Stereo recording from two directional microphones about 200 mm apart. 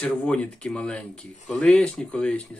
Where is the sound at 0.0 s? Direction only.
5° left (ahead or behind).